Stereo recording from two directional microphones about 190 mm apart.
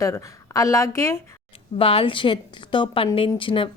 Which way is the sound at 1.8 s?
30° left (ahead or behind).